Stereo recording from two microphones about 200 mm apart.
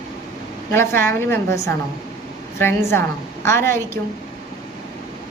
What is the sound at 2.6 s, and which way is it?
Speech, 10° left (ahead or behind).